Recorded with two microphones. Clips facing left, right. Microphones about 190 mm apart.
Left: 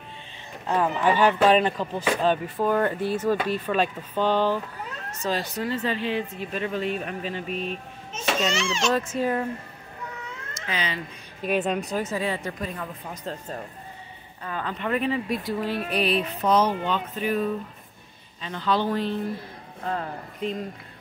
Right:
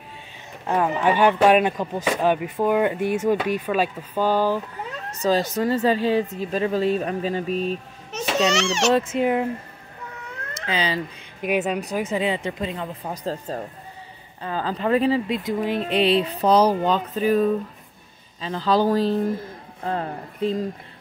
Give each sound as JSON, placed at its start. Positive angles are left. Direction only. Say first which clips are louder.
{"t": 0.7, "sound": "speech", "louder": "right 2 dB", "side_deg": -15}
{"t": 5.2, "sound": "speech", "louder": "right 7 dB", "side_deg": -40}
{"t": 8.1, "sound": "a child's voice", "louder": "right 4 dB", "side_deg": -75}
{"t": 8.9, "sound": "speech", "louder": "right 5 dB", "side_deg": -25}
{"t": 10.7, "sound": "speech", "louder": "right 5 dB", "side_deg": -30}
{"t": 11.4, "sound": "speech", "louder": "right 2 dB", "side_deg": -10}
{"t": 13.0, "sound": "speech", "louder": "right 6 dB", "side_deg": -35}